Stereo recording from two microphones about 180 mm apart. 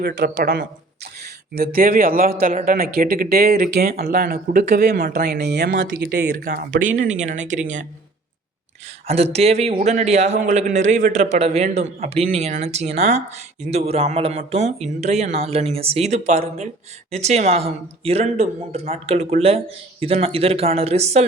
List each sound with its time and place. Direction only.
0.0 s a man's voice: 60° right (ahead or behind); by 7.6 s 40° right (ahead or behind)
9.0 s speech: 35° right (ahead or behind)